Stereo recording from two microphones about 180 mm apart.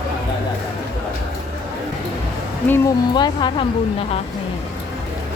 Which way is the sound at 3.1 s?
25° left (ahead or behind).